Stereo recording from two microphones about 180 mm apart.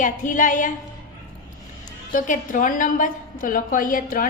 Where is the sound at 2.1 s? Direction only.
45° left (ahead or behind).